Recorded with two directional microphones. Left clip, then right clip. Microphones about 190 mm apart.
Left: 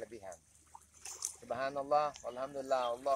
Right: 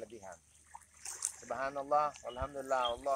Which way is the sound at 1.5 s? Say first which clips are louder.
Even; 15° left (ahead or behind).